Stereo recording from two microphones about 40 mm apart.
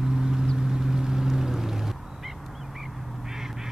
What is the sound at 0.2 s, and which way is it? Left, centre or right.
Vehicle, centre.